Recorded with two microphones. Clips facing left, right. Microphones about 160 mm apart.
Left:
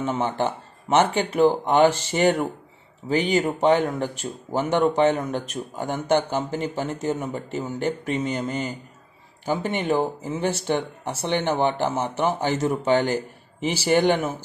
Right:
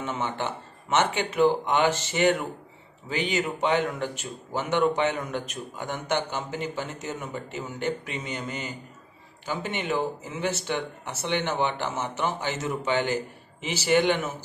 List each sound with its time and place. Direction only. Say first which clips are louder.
0.0 s speech: left 6 dB; 35° left (ahead or behind)